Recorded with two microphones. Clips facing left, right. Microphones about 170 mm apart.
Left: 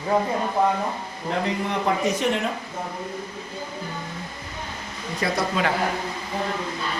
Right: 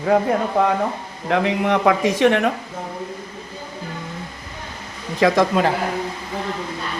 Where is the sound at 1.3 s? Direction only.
80° right.